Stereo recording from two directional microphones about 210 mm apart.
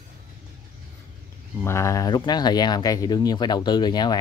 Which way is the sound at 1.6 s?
15° left (ahead or behind).